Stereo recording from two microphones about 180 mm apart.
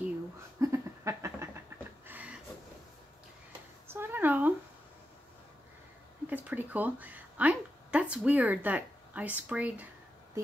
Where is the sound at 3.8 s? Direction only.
10° right (ahead or behind).